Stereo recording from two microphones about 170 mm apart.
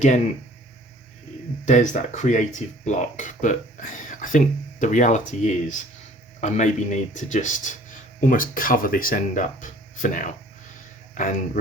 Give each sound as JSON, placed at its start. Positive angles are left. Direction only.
{"t": 1.6, "sound": "speech", "side_deg": 45}